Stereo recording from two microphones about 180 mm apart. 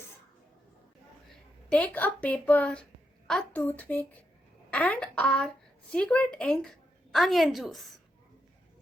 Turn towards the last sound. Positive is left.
turn(degrees=0)  # may be behind; listen again after turning